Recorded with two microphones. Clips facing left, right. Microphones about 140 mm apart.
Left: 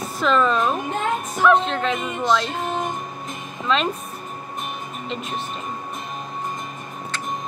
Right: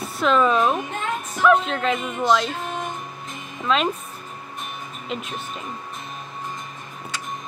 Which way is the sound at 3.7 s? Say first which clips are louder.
Even; 5° right (ahead or behind).